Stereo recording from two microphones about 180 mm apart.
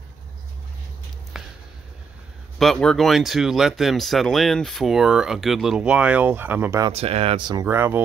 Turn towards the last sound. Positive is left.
turn(degrees=-15)  # may be behind; listen again after turning